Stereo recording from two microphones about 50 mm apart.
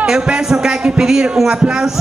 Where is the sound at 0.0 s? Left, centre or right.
Centre.